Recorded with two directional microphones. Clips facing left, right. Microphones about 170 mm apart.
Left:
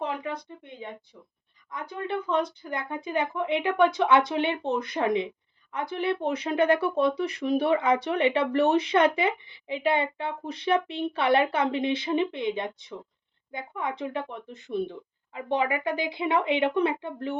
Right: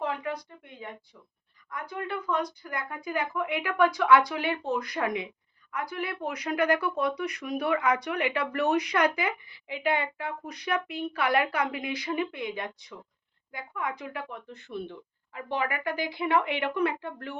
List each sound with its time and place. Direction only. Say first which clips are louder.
0.0 s speech: even; 20° left (ahead or behind)